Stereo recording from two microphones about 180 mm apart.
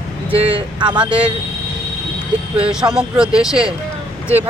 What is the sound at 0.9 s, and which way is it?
Speech, 5° right (ahead or behind).